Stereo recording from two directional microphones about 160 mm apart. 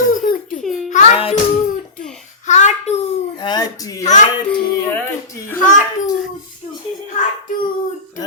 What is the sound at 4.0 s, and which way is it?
Speech, 50° left (ahead or behind).